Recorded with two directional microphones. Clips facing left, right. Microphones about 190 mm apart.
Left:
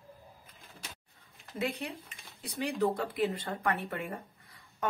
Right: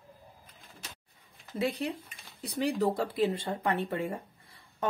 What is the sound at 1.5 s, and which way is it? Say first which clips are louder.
Speech: right 4 dB; 35° right (ahead or behind).